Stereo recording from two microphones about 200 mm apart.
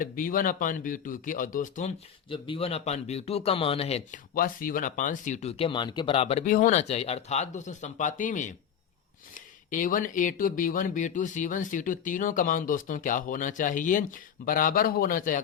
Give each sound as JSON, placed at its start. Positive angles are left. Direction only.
{"t": 0.0, "sound": "speech", "side_deg": 45}
{"t": 2.3, "sound": "speech", "side_deg": 25}
{"t": 4.4, "sound": "speech", "side_deg": 45}